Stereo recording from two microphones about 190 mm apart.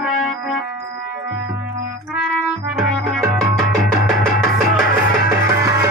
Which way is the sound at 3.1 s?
Centre (ahead or behind).